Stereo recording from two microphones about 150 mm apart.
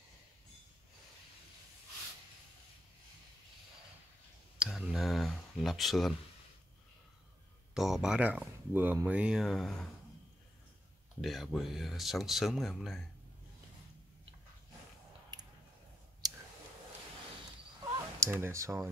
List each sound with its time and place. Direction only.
4.6 s a sound: 5° right (ahead or behind)
7.7 s speech: centre (ahead or behind)
11.1 s speech: centre (ahead or behind)
15.3 s squish: 25° right (ahead or behind)
16.2 s clicking: 25° right (ahead or behind)
18.2 s speech: 15° right (ahead or behind)